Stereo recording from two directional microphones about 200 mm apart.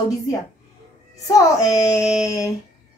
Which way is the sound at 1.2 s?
15° left (ahead or behind).